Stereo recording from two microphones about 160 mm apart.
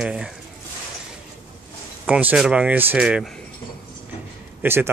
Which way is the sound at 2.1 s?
10° right (ahead or behind).